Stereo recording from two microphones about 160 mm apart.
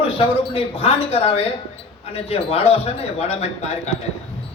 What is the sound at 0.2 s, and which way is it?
Speech, 35° left (ahead or behind).